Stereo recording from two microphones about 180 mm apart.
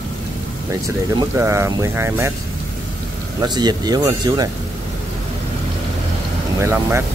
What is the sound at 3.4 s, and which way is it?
Speech, 20° right (ahead or behind).